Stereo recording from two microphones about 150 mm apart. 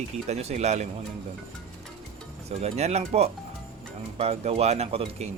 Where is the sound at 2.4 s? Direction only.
45° right (ahead or behind).